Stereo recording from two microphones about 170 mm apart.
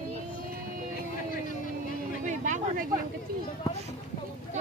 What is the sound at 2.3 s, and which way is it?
Speech, 50° right (ahead or behind).